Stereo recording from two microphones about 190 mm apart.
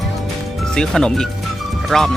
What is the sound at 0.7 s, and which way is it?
Speech, 5° left (ahead or behind).